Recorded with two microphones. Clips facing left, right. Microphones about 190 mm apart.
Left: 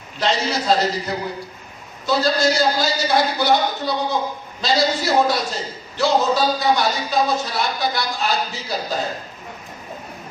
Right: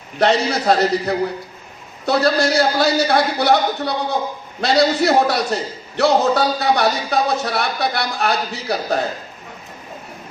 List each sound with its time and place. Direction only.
0.2 s speech: 60° right (ahead or behind)